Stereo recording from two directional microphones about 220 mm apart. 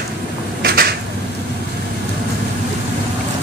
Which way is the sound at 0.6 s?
45° right (ahead or behind).